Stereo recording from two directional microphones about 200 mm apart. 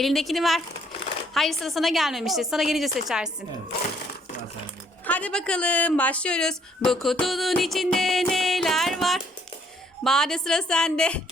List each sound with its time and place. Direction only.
0.0 s speech: centre (ahead or behind)
5.0 s speech: 5° left (ahead or behind)